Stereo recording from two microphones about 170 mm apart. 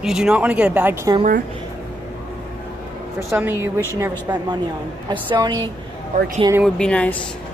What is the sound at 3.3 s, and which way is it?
Speech, 10° right (ahead or behind).